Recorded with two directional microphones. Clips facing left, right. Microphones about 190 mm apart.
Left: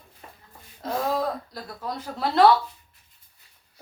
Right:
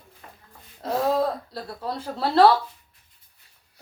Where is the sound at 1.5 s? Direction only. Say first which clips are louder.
Right 2 dB; 30° right (ahead or behind).